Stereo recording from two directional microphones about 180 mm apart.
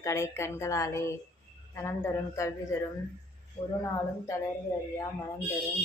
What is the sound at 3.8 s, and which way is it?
A woman's voice, 15° left (ahead or behind).